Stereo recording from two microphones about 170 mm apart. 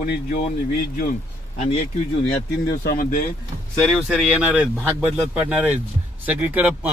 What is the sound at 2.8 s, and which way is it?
Speech, 60° left (ahead or behind).